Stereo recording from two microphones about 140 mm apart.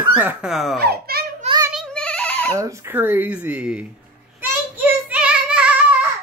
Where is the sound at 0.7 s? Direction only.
90° right.